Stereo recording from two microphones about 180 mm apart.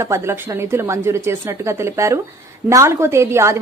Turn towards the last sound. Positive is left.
turn(degrees=-15)  # may be behind; listen again after turning